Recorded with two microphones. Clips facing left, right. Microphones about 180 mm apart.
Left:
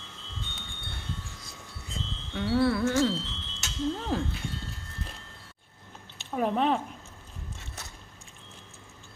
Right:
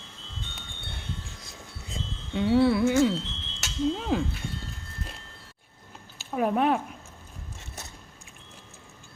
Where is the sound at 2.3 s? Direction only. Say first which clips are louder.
Right 4 dB; 20° right (ahead or behind).